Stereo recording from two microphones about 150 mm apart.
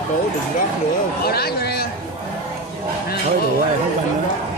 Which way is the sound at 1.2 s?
90° left.